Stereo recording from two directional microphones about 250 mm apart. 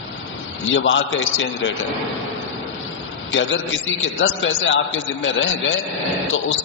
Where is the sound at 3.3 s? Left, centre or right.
Left.